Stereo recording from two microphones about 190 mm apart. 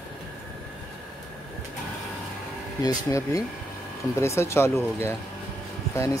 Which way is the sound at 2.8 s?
15° left (ahead or behind).